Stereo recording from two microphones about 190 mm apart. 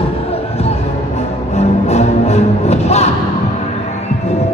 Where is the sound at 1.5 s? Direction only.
35° left (ahead or behind).